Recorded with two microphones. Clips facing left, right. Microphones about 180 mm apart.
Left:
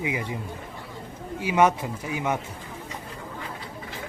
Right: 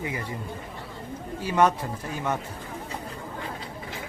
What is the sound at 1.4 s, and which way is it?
Speech, 10° left (ahead or behind).